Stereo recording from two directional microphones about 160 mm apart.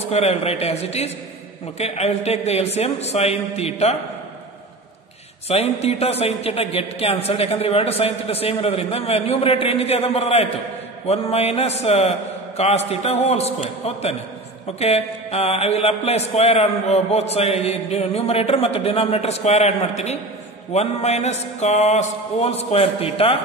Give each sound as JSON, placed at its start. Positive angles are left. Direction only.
{"t": 0.1, "sound": "speech", "side_deg": 40}
{"t": 5.5, "sound": "speech", "side_deg": 40}